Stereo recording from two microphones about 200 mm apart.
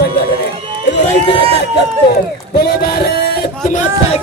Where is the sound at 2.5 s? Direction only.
50° left (ahead or behind).